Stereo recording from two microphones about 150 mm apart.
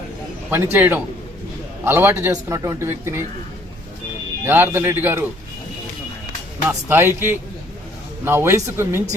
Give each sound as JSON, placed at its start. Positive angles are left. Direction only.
{"t": 0.5, "sound": "a man's voice", "side_deg": -15}
{"t": 4.4, "sound": "a man's voice", "side_deg": -15}
{"t": 6.7, "sound": "a man's voice", "side_deg": -15}